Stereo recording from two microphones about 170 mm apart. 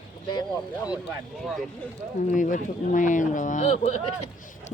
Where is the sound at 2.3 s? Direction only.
50° left (ahead or behind).